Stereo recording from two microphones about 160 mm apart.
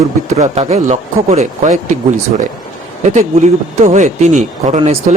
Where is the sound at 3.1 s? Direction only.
45° right (ahead or behind).